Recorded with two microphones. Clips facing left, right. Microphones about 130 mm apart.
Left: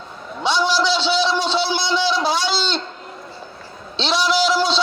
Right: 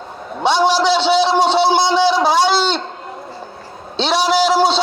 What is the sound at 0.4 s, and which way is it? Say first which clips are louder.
Speech: right 5 dB; 50° right (ahead or behind).